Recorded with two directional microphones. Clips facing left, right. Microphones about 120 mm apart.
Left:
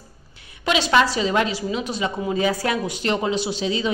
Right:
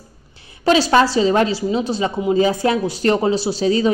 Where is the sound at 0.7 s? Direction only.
35° right (ahead or behind).